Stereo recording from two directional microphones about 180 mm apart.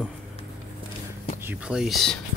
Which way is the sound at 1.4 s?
5° right (ahead or behind).